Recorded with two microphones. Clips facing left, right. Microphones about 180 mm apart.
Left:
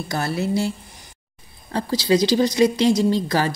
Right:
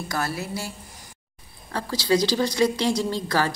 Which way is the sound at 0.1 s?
25° left (ahead or behind).